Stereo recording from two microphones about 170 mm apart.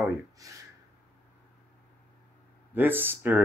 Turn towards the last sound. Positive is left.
turn(degrees=-10)  # may be behind; listen again after turning